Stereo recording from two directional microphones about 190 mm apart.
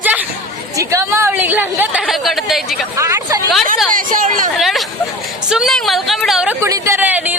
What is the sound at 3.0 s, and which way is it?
Speech, 15° right (ahead or behind).